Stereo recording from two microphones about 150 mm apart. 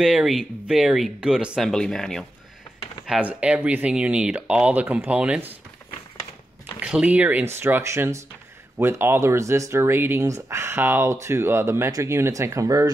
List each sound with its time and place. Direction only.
0.0 s speech: 5° right (ahead or behind)
3.1 s speech: 10° right (ahead or behind)
6.8 s speech: 5° right (ahead or behind); by 12.9 s 20° right (ahead or behind)